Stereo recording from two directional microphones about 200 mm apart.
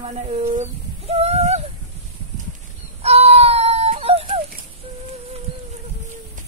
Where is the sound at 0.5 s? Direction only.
35° right (ahead or behind).